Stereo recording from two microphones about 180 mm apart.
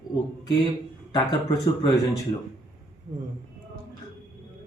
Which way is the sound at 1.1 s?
25° left (ahead or behind).